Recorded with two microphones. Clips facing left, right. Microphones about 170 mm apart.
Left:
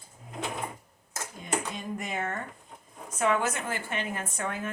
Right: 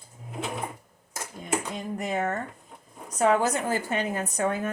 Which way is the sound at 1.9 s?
35° right (ahead or behind).